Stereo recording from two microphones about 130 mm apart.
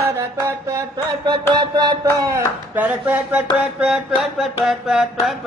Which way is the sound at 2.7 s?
10° right (ahead or behind).